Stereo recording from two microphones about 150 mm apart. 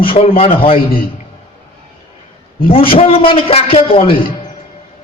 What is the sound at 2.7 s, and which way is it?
A man's voice, 40° left (ahead or behind).